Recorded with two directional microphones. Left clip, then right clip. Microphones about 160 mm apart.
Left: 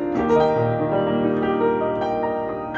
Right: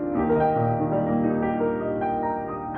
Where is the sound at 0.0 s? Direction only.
15° left (ahead or behind).